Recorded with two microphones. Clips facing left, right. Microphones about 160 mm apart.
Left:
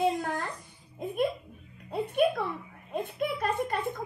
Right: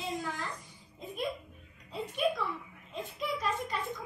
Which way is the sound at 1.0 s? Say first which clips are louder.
Left 7 dB; 55° left (ahead or behind).